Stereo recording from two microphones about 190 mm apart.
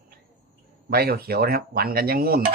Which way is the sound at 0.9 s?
55° right (ahead or behind).